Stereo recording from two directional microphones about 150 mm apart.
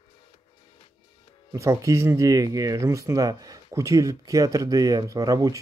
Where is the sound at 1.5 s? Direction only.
20° right (ahead or behind).